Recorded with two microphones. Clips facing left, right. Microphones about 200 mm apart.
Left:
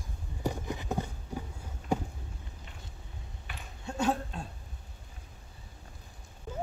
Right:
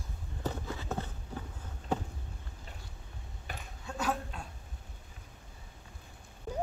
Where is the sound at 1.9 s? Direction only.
10° left (ahead or behind).